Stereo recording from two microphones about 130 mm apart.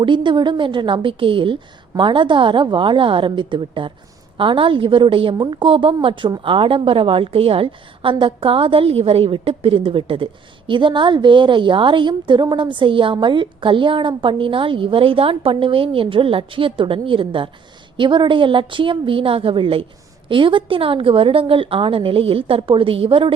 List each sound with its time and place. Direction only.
0.0 s a woman's voice: 40° right (ahead or behind)